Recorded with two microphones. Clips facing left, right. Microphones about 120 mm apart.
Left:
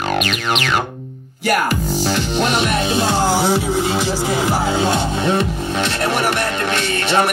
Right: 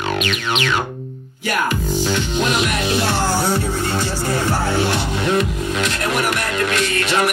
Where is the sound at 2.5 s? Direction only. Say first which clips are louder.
Left 2 dB; 30° left (ahead or behind).